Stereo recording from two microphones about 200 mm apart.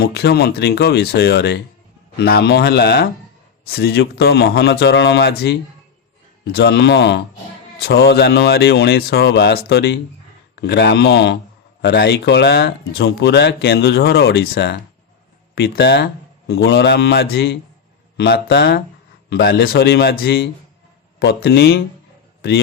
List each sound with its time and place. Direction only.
0.0 s a man's voice: 55° left (ahead or behind)